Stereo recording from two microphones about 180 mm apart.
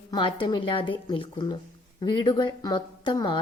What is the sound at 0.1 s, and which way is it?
A woman's voice, 25° left (ahead or behind).